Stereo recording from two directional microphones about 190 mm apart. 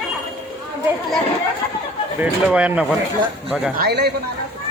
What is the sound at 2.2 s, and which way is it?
Speech, 5° right (ahead or behind).